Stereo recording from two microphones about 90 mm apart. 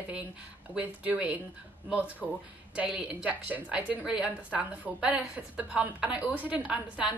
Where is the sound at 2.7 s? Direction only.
10° right (ahead or behind).